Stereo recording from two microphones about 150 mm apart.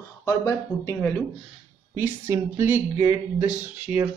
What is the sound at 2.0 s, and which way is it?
Speech, 15° right (ahead or behind).